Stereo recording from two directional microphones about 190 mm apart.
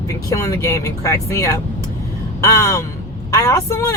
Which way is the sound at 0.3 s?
15° left (ahead or behind).